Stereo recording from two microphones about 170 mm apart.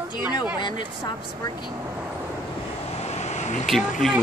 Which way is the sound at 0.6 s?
25° left (ahead or behind).